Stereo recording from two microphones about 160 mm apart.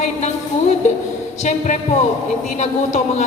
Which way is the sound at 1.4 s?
50° left (ahead or behind).